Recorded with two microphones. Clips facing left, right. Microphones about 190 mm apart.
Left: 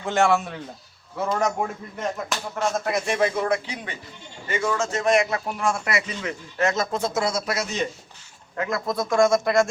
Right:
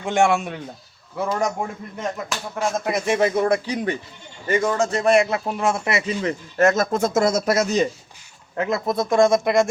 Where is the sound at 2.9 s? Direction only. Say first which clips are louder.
Right 6 dB; 25° right (ahead or behind).